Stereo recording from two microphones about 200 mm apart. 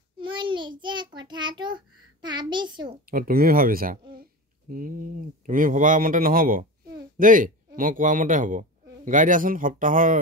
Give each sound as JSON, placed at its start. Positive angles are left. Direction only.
{"t": 0.2, "sound": "child singing", "side_deg": -25}
{"t": 2.2, "sound": "a sound", "side_deg": -20}
{"t": 3.1, "sound": "speech", "side_deg": -45}